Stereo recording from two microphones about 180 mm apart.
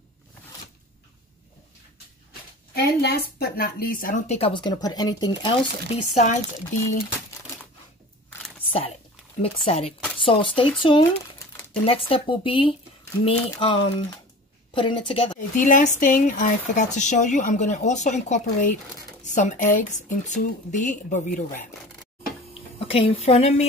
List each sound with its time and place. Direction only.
2.7 s a woman's voice: 65° left (ahead or behind); by 5.6 s 25° left (ahead or behind)
6.1 s speech: 45° left (ahead or behind)
8.4 s a sound: 10° left (ahead or behind)
9.4 s a woman's voice: 35° left (ahead or behind)
15.5 s speech: 45° left (ahead or behind)
22.8 s a woman's voice: 30° left (ahead or behind)